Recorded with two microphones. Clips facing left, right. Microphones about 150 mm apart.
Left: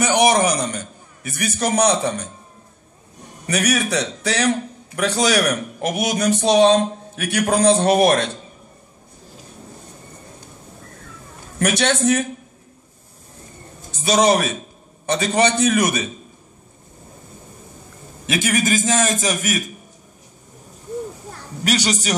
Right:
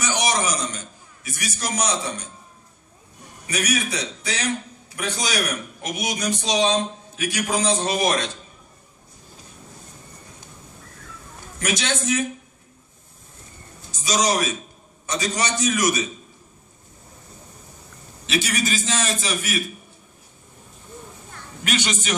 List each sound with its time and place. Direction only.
0.0 s a man's voice: 55° left (ahead or behind)
3.4 s a man's voice: 60° left (ahead or behind)
11.6 s a man's voice: 60° left (ahead or behind)
13.9 s a man's voice: 60° left (ahead or behind)
18.2 s a man's voice: 50° left (ahead or behind)
21.3 s a sound: 35° left (ahead or behind)